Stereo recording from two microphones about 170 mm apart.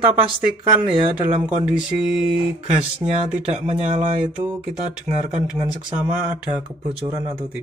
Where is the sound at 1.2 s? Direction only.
5° right (ahead or behind).